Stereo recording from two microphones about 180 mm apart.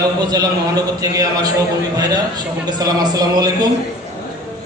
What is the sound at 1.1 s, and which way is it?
Speech, 20° right (ahead or behind).